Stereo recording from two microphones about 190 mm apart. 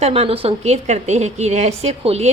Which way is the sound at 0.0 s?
30° right (ahead or behind).